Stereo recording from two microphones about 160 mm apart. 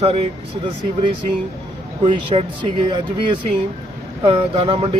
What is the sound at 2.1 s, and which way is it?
Speech, 30° right (ahead or behind).